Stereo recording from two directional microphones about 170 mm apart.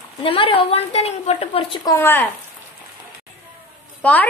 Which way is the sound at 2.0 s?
10° left (ahead or behind).